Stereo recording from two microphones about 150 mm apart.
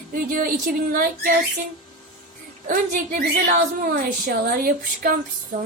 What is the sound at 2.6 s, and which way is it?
A woman's voice, 65° right (ahead or behind).